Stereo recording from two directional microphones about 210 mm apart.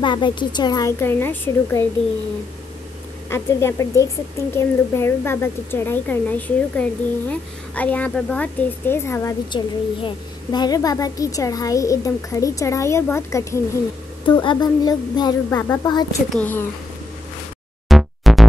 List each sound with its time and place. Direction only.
0.0 s a woman's voice: 20° left (ahead or behind)
3.3 s a woman's voice: 10° left (ahead or behind)
17.8 s music: centre (ahead or behind)